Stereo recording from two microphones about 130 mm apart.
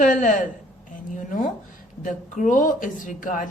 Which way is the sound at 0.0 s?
90° left.